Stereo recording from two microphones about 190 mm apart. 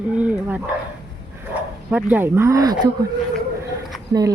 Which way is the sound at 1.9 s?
10° right (ahead or behind).